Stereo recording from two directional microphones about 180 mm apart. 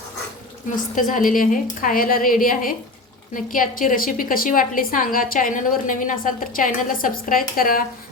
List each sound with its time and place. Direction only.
0.9 s a woman's voice: 50° left (ahead or behind)